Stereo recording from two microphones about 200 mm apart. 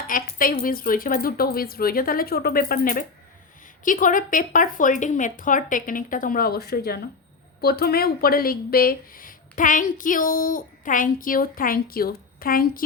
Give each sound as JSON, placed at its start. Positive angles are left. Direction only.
{"t": 0.1, "sound": "speech", "side_deg": 45}